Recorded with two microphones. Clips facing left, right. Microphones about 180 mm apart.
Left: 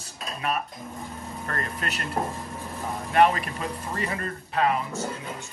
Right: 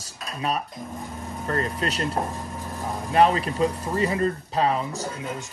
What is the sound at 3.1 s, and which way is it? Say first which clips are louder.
Speech: right 1 dB; 30° right (ahead or behind).